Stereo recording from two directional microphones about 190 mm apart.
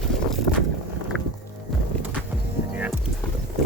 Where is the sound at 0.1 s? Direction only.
Centre (ahead or behind).